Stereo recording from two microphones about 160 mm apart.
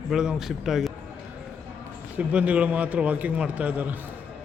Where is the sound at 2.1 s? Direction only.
10° right (ahead or behind).